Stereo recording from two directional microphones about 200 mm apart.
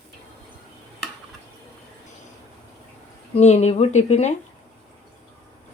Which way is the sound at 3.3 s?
35° left (ahead or behind).